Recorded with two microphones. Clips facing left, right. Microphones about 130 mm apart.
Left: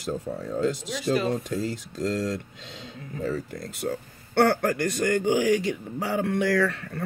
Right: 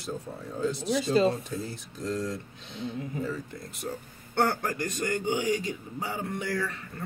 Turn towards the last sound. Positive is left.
turn(degrees=80)